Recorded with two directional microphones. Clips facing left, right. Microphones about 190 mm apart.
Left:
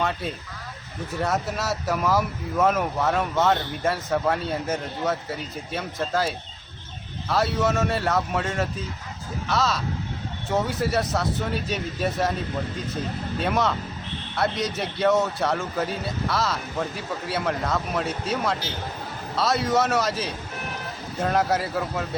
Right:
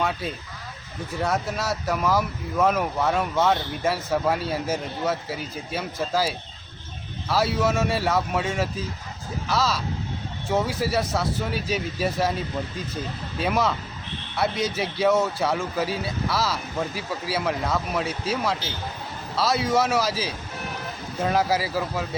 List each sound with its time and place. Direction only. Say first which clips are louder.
0.0 s speech: even; centre (ahead or behind)
13.4 s speech: right 1 dB; 5° right (ahead or behind)